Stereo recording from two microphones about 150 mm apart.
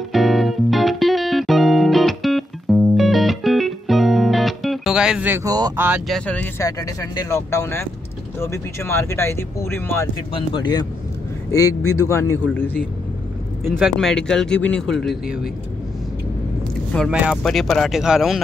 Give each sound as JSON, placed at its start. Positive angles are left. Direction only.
{"t": 0.1, "sound": "music", "side_deg": 0}
{"t": 5.4, "sound": "speech", "side_deg": -25}
{"t": 5.8, "sound": "speech", "side_deg": -10}
{"t": 6.0, "sound": "speech", "side_deg": 5}
{"t": 6.6, "sound": "speech", "side_deg": 20}
{"t": 10.3, "sound": "speech", "side_deg": 30}
{"t": 13.7, "sound": "speech", "side_deg": 0}
{"t": 17.1, "sound": "speech", "side_deg": -5}